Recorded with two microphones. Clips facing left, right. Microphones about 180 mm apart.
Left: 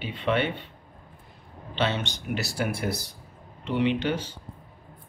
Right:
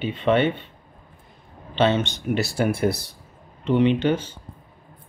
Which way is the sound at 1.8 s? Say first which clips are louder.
Right 7 dB; 25° right (ahead or behind).